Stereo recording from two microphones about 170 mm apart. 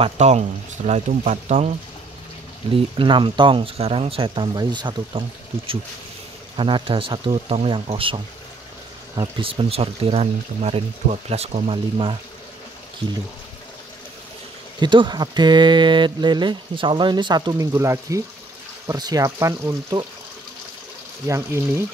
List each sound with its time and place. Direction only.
0.0 s speech: 40° right (ahead or behind)
2.7 s speech: 30° right (ahead or behind)
6.5 s speech: 30° right (ahead or behind)
14.8 s speech: 25° right (ahead or behind)
21.3 s speech: 20° right (ahead or behind)